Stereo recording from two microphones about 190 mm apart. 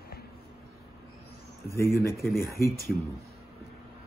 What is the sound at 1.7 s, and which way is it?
Speech, 50° left (ahead or behind).